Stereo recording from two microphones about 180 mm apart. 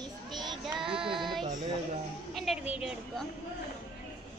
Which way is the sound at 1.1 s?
Centre (ahead or behind).